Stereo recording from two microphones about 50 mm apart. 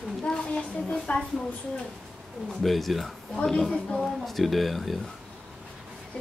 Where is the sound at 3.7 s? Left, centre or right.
Centre.